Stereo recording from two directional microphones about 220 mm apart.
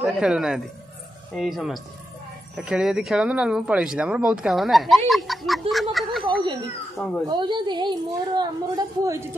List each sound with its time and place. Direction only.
0.0 s speech: 5° right (ahead or behind)
7.2 s a woman's voice: 20° right (ahead or behind)